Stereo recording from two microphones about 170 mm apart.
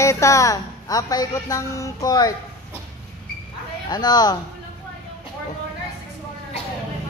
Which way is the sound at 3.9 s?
25° left (ahead or behind).